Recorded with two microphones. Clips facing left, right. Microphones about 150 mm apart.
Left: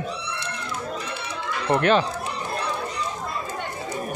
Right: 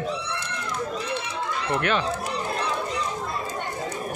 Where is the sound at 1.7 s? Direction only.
35° left (ahead or behind).